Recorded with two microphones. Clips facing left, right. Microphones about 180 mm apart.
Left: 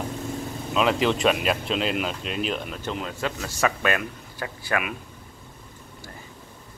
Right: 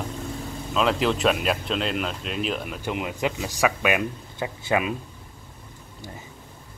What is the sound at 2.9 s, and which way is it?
Speech, 15° right (ahead or behind).